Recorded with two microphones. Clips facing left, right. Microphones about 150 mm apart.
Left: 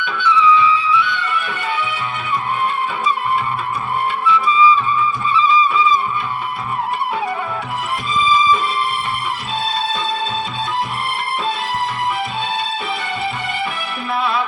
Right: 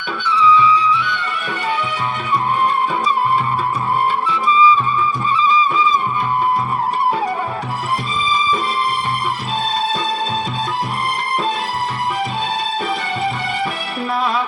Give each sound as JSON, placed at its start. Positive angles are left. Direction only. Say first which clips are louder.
{"t": 4.3, "sound": "music", "louder": "left 2 dB", "side_deg": -40}
{"t": 5.3, "sound": "vehicle", "louder": "left 1 dB", "side_deg": -40}
{"t": 8.1, "sound": "music", "louder": "left 7 dB", "side_deg": -40}